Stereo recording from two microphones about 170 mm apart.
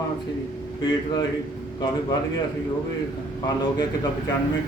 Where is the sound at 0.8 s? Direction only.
25° left (ahead or behind).